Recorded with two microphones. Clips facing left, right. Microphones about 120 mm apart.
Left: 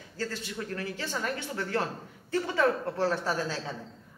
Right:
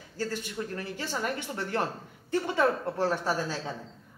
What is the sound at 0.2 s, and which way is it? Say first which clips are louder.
A woman's voice: right 2 dB; 15° right (ahead or behind).